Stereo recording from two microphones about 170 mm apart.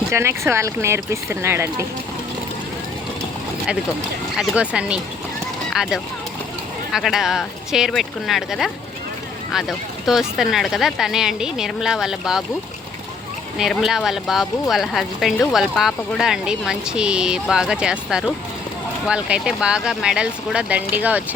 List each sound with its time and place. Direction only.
0.1 s speech: 15° right (ahead or behind)
4.4 s speech: 5° right (ahead or behind)
13.6 s speech: 5° right (ahead or behind)